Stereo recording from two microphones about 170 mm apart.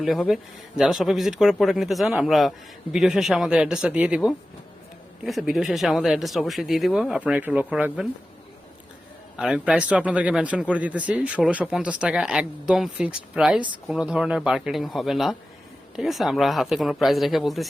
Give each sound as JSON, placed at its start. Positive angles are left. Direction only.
{"t": 0.0, "sound": "speech", "side_deg": 0}
{"t": 9.4, "sound": "speech", "side_deg": -5}